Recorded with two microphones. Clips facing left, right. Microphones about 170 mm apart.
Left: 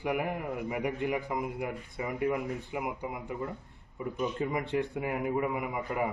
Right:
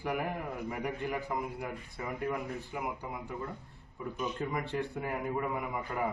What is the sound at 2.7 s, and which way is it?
Speech, 10° left (ahead or behind).